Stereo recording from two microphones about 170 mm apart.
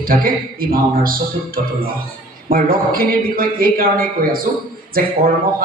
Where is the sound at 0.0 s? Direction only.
60° right (ahead or behind).